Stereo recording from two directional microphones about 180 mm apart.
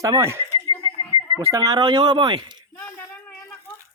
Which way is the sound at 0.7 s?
25° left (ahead or behind).